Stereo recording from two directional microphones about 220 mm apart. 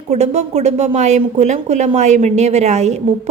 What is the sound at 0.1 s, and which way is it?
A woman's voice, 30° right (ahead or behind).